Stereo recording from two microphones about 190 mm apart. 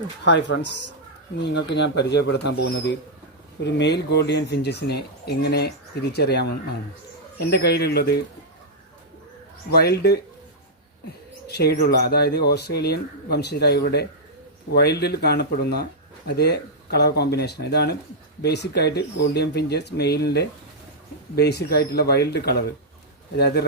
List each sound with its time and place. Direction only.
0.3 s speech: 70° left (ahead or behind)
9.7 s speech: 55° left (ahead or behind)
11.4 s speech: 60° left (ahead or behind)